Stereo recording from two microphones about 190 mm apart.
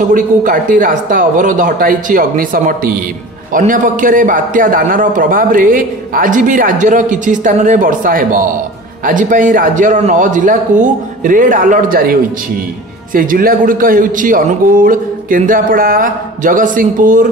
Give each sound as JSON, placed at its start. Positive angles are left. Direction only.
{"t": 0.1, "sound": "a man's voice", "side_deg": -45}